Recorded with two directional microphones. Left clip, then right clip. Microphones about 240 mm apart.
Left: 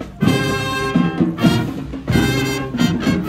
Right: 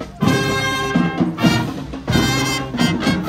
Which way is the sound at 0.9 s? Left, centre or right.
Centre.